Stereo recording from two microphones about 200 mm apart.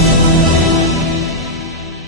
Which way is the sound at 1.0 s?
Centre (ahead or behind).